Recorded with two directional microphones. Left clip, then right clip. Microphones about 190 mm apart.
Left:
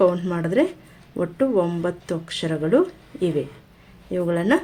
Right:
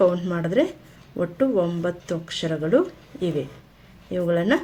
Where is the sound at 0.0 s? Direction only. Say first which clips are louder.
Left 1 dB; 20° left (ahead or behind).